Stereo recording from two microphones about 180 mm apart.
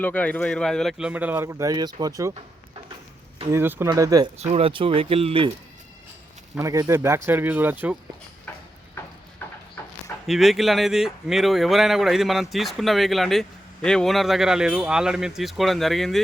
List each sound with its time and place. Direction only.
0.0 s speech: 10° left (ahead or behind); by 2.3 s 20° right (ahead or behind)
3.5 s speech: 10° right (ahead or behind)
4.4 s speech: 35° right (ahead or behind)
6.6 s speech: 15° right (ahead or behind)
10.2 s speech: centre (ahead or behind)